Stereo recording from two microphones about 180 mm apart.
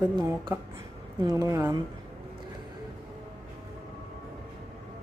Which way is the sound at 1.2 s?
20° right (ahead or behind).